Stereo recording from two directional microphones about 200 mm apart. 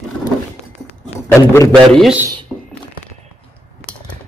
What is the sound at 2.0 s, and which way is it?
Speech, 10° right (ahead or behind).